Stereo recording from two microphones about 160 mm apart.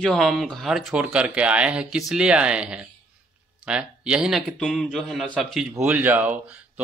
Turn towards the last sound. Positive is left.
turn(degrees=-10)  # may be behind; listen again after turning